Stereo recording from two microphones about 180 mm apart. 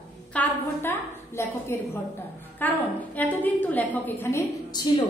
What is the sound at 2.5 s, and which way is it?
A woman's voice, 10° left (ahead or behind).